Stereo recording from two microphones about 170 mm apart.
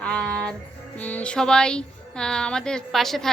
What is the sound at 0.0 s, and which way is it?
Music, 5° left (ahead or behind).